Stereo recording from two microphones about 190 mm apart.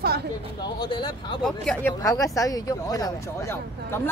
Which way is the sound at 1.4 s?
5° left (ahead or behind).